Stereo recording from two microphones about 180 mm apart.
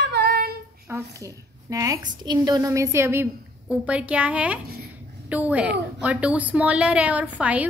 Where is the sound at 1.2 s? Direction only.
20° right (ahead or behind).